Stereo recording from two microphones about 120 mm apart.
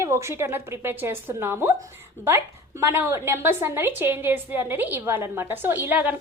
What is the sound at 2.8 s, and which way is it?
A woman's voice, 20° right (ahead or behind).